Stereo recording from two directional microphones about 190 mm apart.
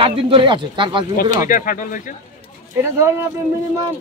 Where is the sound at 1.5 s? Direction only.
45° left (ahead or behind).